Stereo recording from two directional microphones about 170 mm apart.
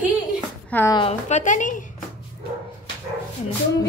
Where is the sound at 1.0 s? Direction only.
40° left (ahead or behind).